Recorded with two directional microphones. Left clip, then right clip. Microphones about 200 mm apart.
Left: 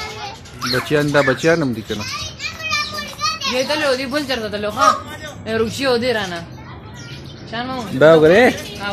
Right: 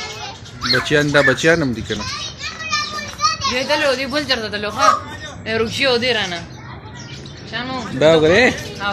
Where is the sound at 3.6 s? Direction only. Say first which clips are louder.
Left 2 dB; 55° left (ahead or behind); by 6.4 s 35° left (ahead or behind).